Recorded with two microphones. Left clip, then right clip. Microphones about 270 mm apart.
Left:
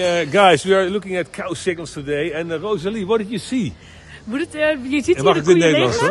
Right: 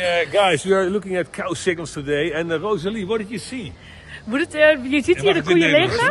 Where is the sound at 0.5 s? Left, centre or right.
Centre.